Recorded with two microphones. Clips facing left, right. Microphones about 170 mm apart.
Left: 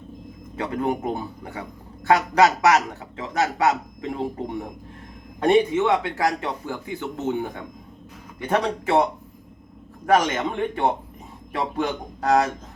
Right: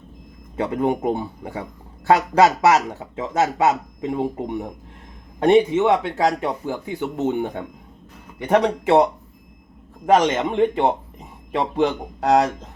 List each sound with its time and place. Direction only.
0.5 s speech: 25° right (ahead or behind)
10.2 s speech: 25° right (ahead or behind)